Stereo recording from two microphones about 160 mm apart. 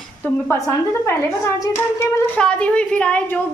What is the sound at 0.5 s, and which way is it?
A woman's voice, 20° left (ahead or behind).